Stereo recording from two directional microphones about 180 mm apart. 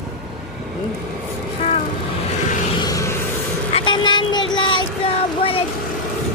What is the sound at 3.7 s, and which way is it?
Speech, 25° left (ahead or behind).